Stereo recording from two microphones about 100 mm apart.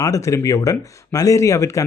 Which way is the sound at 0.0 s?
35° left (ahead or behind).